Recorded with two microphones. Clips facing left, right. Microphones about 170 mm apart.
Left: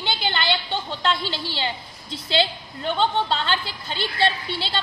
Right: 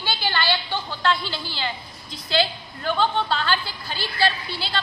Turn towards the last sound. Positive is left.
turn(degrees=25)  # may be behind; listen again after turning